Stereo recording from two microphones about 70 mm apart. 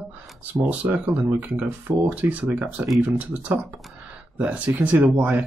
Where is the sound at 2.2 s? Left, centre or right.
Centre.